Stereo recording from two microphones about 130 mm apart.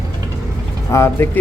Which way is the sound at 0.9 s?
20° left (ahead or behind).